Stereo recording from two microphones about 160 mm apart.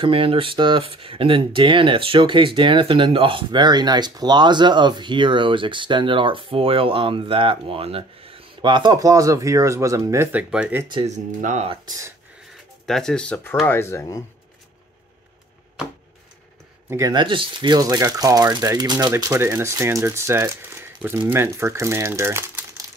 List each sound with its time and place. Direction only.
0.0 s speech: 35° right (ahead or behind); by 10.8 s 10° right (ahead or behind)
10.8 s speech: 30° right (ahead or behind)
11.1 s speech: 45° right (ahead or behind)
11.7 s speech: 25° right (ahead or behind)
12.8 s speech: 5° left (ahead or behind); by 14.2 s 20° left (ahead or behind)
16.9 s speech: 25° right (ahead or behind)